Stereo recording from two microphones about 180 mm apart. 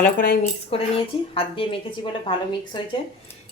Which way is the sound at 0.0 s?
50° left (ahead or behind).